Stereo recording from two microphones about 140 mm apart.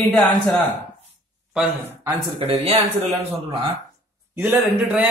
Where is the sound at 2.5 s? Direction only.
50° right (ahead or behind).